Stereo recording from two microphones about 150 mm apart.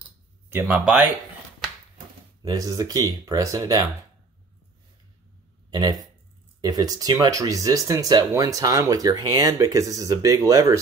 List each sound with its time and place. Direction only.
0.5 s speech: 10° right (ahead or behind)
2.4 s speech: 25° right (ahead or behind)
5.7 s speech: 25° right (ahead or behind)